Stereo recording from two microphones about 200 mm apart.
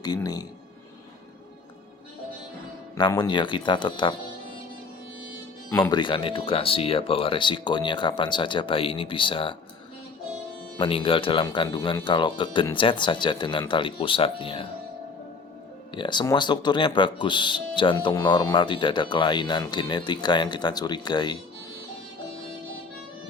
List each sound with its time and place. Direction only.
0.0 s speech: 20° left (ahead or behind)
2.9 s speech: 20° left (ahead or behind)
5.7 s speech: 20° left (ahead or behind)
10.8 s speech: 25° left (ahead or behind)
16.0 s speech: 20° left (ahead or behind)